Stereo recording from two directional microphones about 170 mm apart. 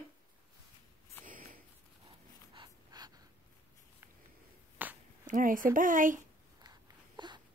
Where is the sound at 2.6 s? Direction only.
25° right (ahead or behind).